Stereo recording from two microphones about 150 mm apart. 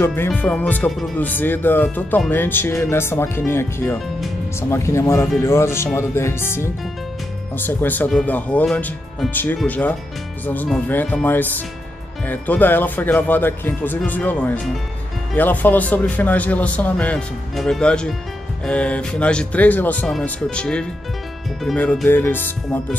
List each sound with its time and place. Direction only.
0.0 s speech: 15° left (ahead or behind)
0.9 s speech: centre (ahead or behind)
1.2 s speech: 10° left (ahead or behind)